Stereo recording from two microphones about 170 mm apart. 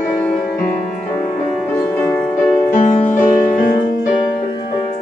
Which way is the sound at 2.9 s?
45° left (ahead or behind).